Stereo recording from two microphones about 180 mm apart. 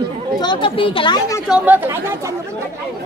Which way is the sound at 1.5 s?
5° right (ahead or behind).